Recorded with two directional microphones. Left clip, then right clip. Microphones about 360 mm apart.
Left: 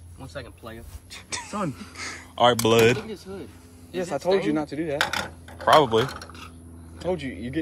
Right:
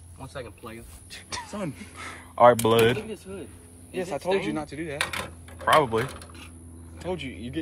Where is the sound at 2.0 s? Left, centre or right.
Centre.